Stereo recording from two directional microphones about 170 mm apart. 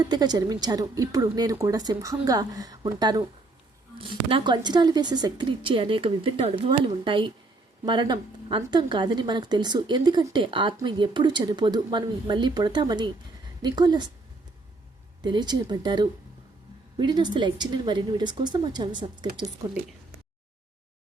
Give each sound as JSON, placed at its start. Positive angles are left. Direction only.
{"t": 0.1, "sound": "a woman's voice", "side_deg": -25}
{"t": 15.2, "sound": "a woman's voice", "side_deg": -25}